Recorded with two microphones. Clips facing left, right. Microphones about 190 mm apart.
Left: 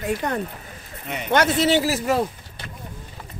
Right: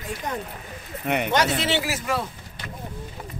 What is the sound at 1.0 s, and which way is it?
Speech, 60° right (ahead or behind).